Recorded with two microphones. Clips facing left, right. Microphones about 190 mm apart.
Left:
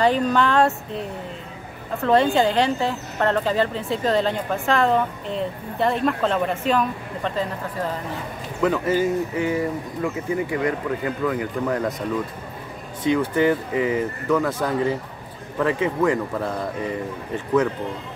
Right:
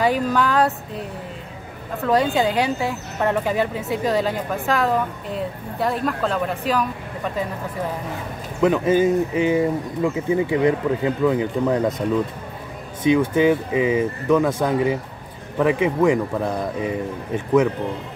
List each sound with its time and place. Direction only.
0.0 s speech: 5° right (ahead or behind)
2.0 s speech: centre (ahead or behind)
8.5 s speech: 15° right (ahead or behind)
13.0 s speech: 15° right (ahead or behind)